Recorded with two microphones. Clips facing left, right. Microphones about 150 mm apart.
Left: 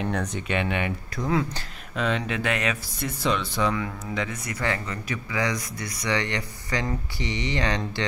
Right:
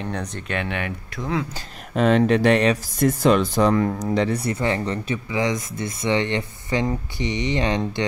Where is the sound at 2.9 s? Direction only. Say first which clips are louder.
Right 11 dB; 50° right (ahead or behind).